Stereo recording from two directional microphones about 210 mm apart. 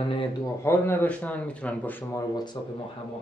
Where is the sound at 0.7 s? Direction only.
10° left (ahead or behind).